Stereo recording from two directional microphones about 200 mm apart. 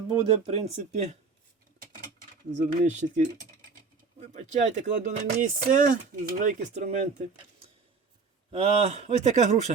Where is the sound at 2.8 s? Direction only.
40° right (ahead or behind).